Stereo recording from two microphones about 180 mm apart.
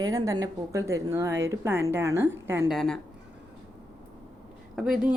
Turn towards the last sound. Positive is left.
turn(degrees=-5)  # may be behind; listen again after turning